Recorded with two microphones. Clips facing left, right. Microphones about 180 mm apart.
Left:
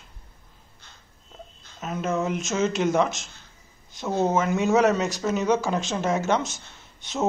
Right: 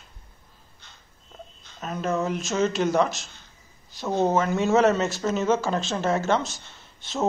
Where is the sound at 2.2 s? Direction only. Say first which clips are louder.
Even; 20° left (ahead or behind).